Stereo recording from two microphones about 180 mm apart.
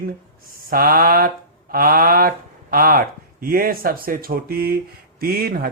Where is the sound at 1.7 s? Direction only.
55° right (ahead or behind).